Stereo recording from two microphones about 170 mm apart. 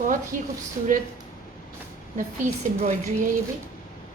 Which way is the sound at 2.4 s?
45° right (ahead or behind).